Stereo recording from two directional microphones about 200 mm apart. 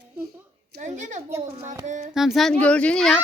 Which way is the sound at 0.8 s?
35° right (ahead or behind).